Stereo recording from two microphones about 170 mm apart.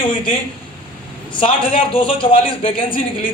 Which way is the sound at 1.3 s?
30° left (ahead or behind).